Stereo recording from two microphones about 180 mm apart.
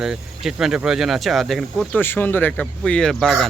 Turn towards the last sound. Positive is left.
turn(degrees=0)  # may be behind; listen again after turning